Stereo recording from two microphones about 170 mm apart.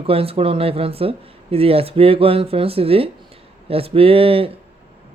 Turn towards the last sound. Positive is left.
turn(degrees=-35)  # may be behind; listen again after turning